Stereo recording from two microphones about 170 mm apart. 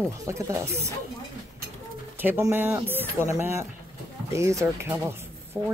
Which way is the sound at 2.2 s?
15° right (ahead or behind).